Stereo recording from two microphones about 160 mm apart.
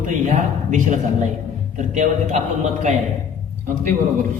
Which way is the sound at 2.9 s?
45° right (ahead or behind).